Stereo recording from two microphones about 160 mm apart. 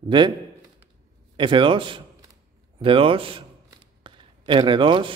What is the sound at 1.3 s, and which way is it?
Speech, 30° right (ahead or behind).